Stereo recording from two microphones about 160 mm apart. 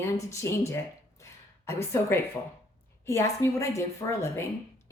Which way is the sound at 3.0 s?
20° left (ahead or behind).